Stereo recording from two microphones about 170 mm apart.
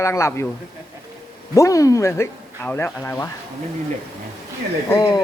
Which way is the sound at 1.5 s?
20° left (ahead or behind).